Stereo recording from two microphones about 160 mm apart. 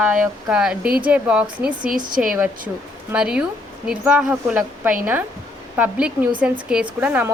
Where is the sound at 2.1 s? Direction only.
60° right (ahead or behind).